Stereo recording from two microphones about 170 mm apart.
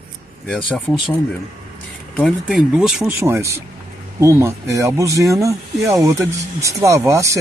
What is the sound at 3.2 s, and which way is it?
Speech, 15° right (ahead or behind).